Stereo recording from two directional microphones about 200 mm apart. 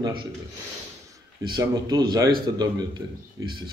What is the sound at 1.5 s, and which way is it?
A man's voice, 20° right (ahead or behind).